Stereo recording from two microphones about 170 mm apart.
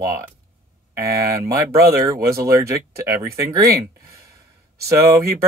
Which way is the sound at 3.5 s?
20° right (ahead or behind).